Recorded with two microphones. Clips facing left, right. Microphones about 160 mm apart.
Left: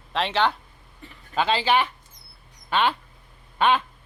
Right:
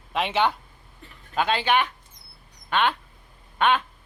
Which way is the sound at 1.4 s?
5° left (ahead or behind).